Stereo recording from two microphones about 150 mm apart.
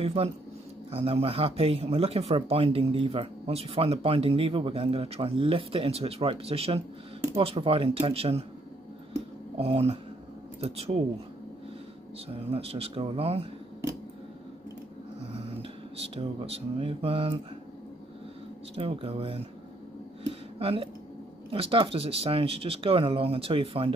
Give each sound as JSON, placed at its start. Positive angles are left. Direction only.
{"t": 0.0, "sound": "speech", "side_deg": -45}
{"t": 9.6, "sound": "speech", "side_deg": -40}
{"t": 12.4, "sound": "speech", "side_deg": -40}
{"t": 16.2, "sound": "speech", "side_deg": -40}
{"t": 18.8, "sound": "speech", "side_deg": -40}
{"t": 20.2, "sound": "a sound", "side_deg": -40}
{"t": 21.5, "sound": "speech", "side_deg": -35}